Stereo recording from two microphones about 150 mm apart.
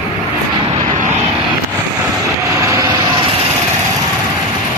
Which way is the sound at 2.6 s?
20° right (ahead or behind).